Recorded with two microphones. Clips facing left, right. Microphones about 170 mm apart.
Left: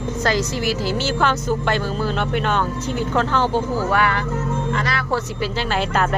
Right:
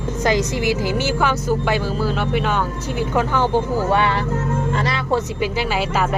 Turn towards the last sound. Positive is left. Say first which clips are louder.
# even
turn(degrees=-5)  # may be behind; listen again after turning